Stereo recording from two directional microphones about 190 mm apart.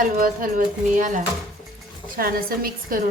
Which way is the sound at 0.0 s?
45° right (ahead or behind).